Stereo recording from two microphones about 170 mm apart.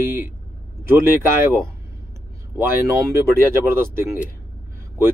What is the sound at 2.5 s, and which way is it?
Speech, 15° right (ahead or behind).